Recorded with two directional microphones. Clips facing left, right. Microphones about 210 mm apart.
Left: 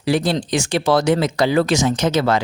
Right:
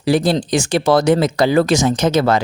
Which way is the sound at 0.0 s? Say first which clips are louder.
Right 3 dB; 35° right (ahead or behind).